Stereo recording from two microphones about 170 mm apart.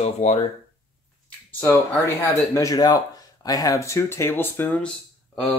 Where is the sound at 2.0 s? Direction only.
15° left (ahead or behind).